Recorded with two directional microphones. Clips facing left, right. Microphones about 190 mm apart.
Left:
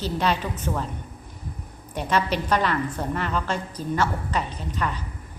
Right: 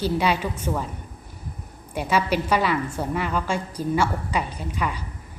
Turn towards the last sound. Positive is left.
turn(degrees=-10)  # may be behind; listen again after turning